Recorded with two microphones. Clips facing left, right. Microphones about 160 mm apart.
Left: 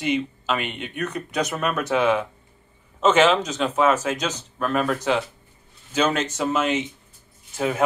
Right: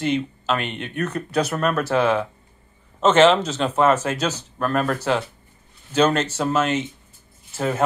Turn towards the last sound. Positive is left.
turn(degrees=10)  # may be behind; listen again after turning